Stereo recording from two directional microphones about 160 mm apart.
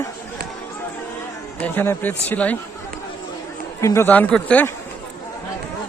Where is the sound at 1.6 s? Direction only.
10° left (ahead or behind).